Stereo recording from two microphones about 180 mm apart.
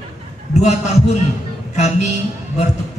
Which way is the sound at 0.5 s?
40° left (ahead or behind).